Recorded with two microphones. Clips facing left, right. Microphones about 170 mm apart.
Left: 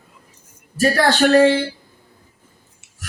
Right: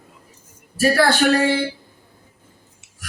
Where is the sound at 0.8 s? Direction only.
10° right (ahead or behind).